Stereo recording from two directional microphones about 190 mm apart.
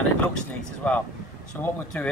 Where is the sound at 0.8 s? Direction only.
5° left (ahead or behind).